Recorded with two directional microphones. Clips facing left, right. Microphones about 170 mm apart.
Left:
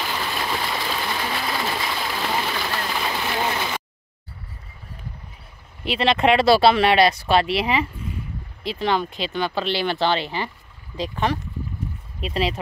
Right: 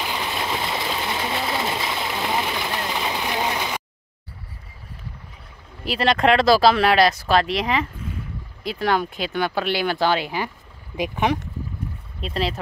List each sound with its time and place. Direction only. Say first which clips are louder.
0.0 s a sound: even; 20° right (ahead or behind)
5.9 s speech: even; 5° left (ahead or behind)
8.6 s speech: right 1 dB; 5° right (ahead or behind)
12.2 s speech: left 1 dB; 5° left (ahead or behind)